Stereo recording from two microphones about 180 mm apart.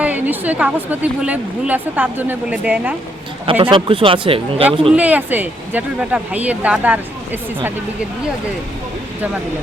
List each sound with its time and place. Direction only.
0.0 s a woman's voice: 10° right (ahead or behind)
3.6 s speech: 30° right (ahead or behind)
4.9 s a woman's voice: 10° right (ahead or behind)